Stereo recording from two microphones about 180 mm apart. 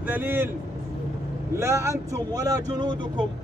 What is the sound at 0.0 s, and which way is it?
A man's voice, 10° right (ahead or behind).